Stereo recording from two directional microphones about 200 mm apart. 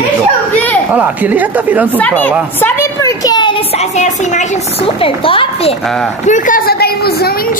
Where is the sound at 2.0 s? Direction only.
10° left (ahead or behind); by 5.8 s 25° left (ahead or behind).